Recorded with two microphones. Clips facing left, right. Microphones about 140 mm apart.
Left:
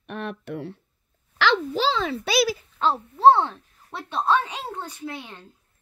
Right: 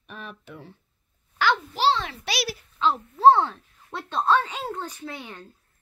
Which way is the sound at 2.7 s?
40° left (ahead or behind).